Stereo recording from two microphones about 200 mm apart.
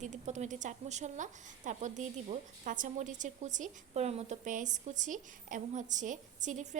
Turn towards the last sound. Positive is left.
turn(degrees=-40)  # may be behind; listen again after turning